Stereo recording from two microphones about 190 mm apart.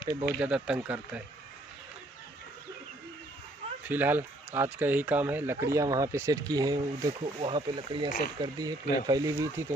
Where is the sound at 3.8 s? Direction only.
10° right (ahead or behind).